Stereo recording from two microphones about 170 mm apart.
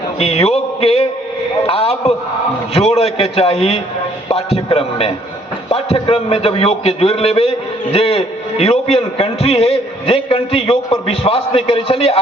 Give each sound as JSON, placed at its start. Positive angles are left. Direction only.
{"t": 0.2, "sound": "a man's voice", "side_deg": 35}